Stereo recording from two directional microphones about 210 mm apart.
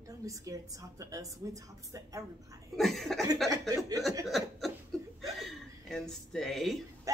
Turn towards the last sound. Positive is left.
turn(degrees=0)  # may be behind; listen again after turning